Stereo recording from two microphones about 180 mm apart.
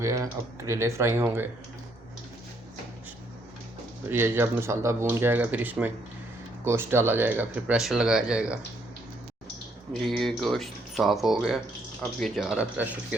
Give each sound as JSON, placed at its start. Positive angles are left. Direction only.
{"t": 0.0, "sound": "speech", "side_deg": -20}
{"t": 4.1, "sound": "speech", "side_deg": -15}
{"t": 9.9, "sound": "speech", "side_deg": 0}